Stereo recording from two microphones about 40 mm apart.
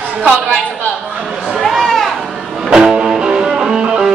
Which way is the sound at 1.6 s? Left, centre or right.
Centre.